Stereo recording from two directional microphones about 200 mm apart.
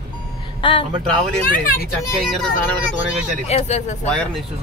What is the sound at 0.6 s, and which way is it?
Speech, 25° left (ahead or behind).